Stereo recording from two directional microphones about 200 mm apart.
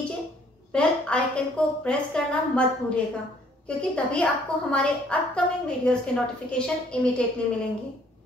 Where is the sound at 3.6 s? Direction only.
5° left (ahead or behind).